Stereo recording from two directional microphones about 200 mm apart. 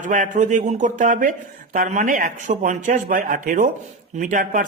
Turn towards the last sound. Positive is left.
turn(degrees=-40)  # may be behind; listen again after turning